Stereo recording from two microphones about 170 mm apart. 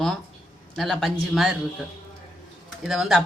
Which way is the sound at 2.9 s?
Centre (ahead or behind).